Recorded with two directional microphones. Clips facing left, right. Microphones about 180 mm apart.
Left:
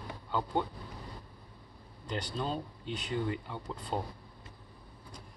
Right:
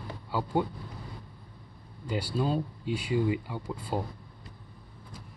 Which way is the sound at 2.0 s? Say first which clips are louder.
Right 6 dB; 10° right (ahead or behind).